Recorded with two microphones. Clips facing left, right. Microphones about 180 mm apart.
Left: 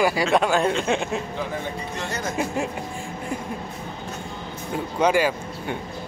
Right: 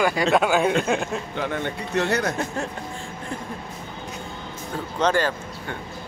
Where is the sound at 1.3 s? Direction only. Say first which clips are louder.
Right 2 dB; 70° right (ahead or behind).